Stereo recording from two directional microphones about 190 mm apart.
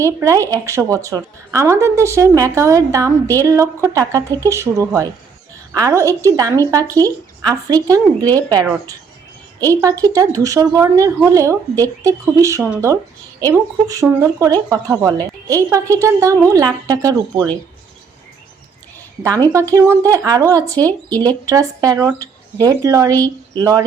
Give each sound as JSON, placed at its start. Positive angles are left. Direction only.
{"t": 0.2, "sound": "speech", "side_deg": -15}
{"t": 9.6, "sound": "speech", "side_deg": -15}
{"t": 19.5, "sound": "speech", "side_deg": -15}
{"t": 20.7, "sound": "speech", "side_deg": 10}
{"t": 21.2, "sound": "speech", "side_deg": -20}